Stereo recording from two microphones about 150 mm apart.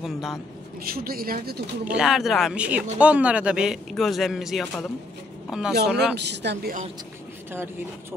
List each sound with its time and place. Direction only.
0.0 s speech: centre (ahead or behind)
0.8 s speech: 80° right
1.9 s speech: 5° right (ahead or behind)
6.1 s speech: 90° right